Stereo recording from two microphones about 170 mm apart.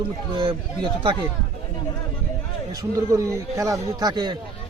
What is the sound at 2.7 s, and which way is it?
A man's voice, 20° right (ahead or behind).